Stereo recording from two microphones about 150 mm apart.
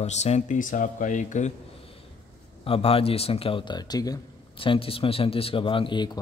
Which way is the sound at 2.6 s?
40° left (ahead or behind).